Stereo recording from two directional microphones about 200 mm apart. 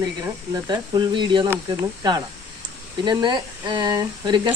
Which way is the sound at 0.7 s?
25° right (ahead or behind).